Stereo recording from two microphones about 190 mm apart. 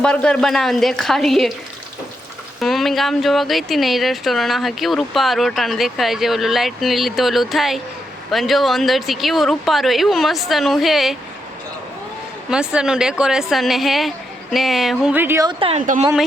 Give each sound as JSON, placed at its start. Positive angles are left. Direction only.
{"t": 0.0, "sound": "speech", "side_deg": 5}
{"t": 2.6, "sound": "speech", "side_deg": 0}
{"t": 12.5, "sound": "speech", "side_deg": -5}
{"t": 15.4, "sound": "speech", "side_deg": -30}